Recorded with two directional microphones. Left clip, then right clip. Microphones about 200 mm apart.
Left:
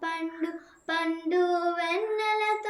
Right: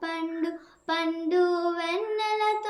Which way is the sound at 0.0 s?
30° right (ahead or behind).